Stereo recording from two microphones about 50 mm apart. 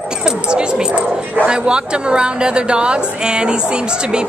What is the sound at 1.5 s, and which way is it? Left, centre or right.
A woman's voice, centre.